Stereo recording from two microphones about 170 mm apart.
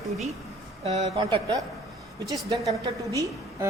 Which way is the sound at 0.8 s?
40° right (ahead or behind).